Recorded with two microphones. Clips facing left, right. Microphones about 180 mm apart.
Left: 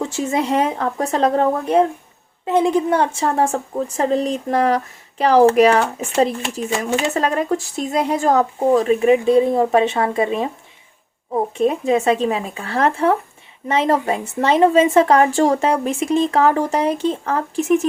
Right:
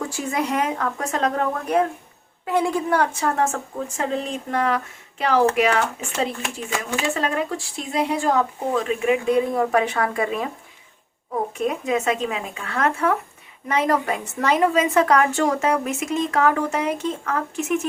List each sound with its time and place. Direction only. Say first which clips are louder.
0.0 s a woman's voice: left 4 dB; 25° left (ahead or behind)
7.1 s a woman's voice: left 5 dB; 40° left (ahead or behind); by 10.5 s 25° left (ahead or behind)
11.5 s a woman's voice: left 7 dB; 30° left (ahead or behind)